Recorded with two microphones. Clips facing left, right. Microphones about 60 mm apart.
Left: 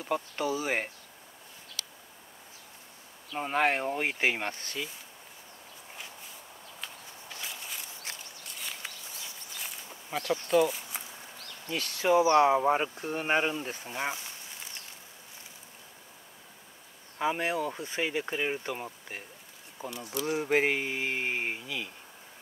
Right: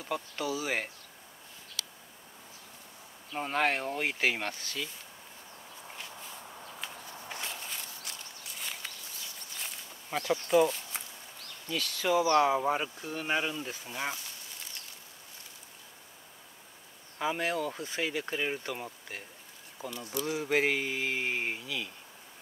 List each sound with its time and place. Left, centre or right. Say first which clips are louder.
0.0 s speech: left 3 dB; left
3.3 s speech: left 2 dB; centre; by 4.7 s left
6.8 s walk: right 1 dB; centre
8.5 s a sound: even; centre
10.0 s speech: even; centre
10.8 s a sound: left 1 dB; centre
11.8 s speech: left 4 dB; centre
13.9 s a sound: left 2 dB; centre
17.2 s speech: left 2 dB; centre